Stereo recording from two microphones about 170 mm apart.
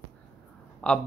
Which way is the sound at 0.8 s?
5° left (ahead or behind).